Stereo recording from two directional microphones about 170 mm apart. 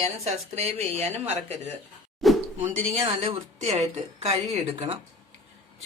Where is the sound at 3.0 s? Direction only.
40° right (ahead or behind).